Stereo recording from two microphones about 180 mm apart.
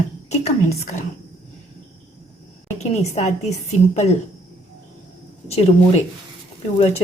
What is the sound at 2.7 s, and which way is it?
A woman's voice, 40° left (ahead or behind).